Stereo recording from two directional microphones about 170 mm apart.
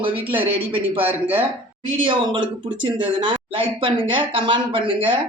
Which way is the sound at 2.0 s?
30° right (ahead or behind).